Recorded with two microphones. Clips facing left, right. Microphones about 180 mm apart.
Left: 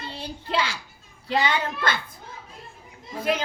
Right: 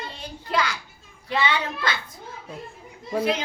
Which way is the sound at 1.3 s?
45° left (ahead or behind).